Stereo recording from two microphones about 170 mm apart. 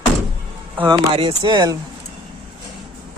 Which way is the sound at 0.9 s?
30° right (ahead or behind).